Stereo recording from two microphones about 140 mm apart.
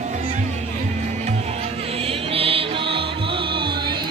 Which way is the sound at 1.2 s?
50° right (ahead or behind).